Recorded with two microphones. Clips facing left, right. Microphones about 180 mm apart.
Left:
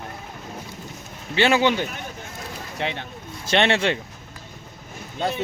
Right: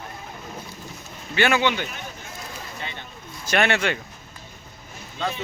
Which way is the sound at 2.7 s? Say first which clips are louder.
Left 12 dB; 75° left (ahead or behind).